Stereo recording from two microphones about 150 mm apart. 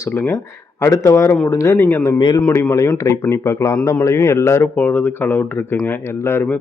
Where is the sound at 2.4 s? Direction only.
15° left (ahead or behind).